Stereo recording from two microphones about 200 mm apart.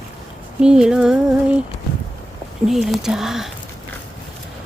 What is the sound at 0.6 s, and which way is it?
Speech, 5° right (ahead or behind).